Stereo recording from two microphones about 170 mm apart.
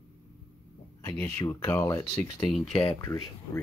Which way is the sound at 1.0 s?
15° left (ahead or behind).